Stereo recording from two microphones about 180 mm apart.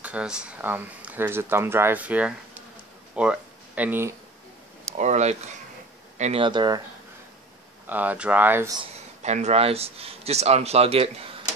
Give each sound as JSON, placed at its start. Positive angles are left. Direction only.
{"t": 0.0, "sound": "speech", "side_deg": -5}
{"t": 4.9, "sound": "a man's voice", "side_deg": -40}
{"t": 6.4, "sound": "speech", "side_deg": -25}
{"t": 7.8, "sound": "speech", "side_deg": -10}
{"t": 9.2, "sound": "a man's voice", "side_deg": -40}